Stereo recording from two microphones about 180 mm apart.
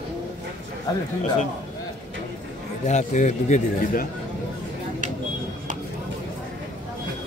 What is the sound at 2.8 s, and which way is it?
A man's voice, 40° left (ahead or behind).